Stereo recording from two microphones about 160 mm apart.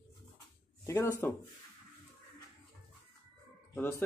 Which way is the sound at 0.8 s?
15° left (ahead or behind).